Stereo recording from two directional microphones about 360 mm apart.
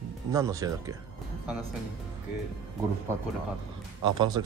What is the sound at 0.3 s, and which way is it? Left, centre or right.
Speech, centre.